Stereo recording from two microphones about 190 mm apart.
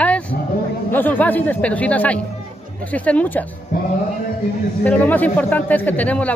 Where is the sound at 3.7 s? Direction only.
45° left (ahead or behind).